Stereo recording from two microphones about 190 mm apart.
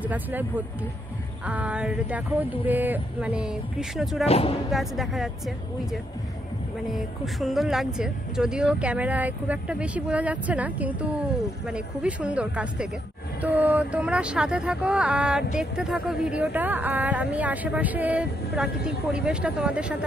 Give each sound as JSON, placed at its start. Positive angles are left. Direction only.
{"t": 0.0, "sound": "speech", "side_deg": -10}
{"t": 4.3, "sound": "speech", "side_deg": 30}
{"t": 4.6, "sound": "speech", "side_deg": 0}
{"t": 6.9, "sound": "speech", "side_deg": 0}